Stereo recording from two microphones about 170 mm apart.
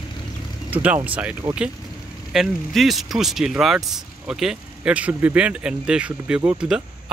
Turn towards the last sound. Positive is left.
turn(degrees=-5)  # may be behind; listen again after turning